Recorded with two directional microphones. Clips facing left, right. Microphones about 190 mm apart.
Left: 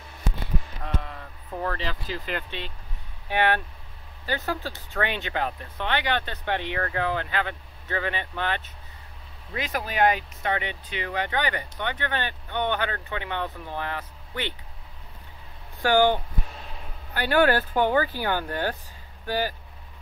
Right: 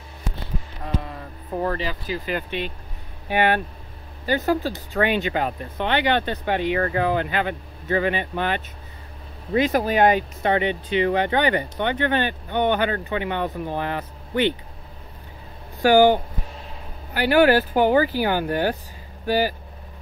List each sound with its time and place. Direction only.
0.8 s a sound: 5° right (ahead or behind)
1.5 s speech: 15° right (ahead or behind)
9.5 s speech: 30° right (ahead or behind)
15.8 s speech: 10° right (ahead or behind)